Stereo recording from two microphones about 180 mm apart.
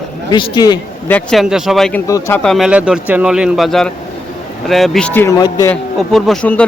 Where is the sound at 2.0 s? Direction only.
15° left (ahead or behind).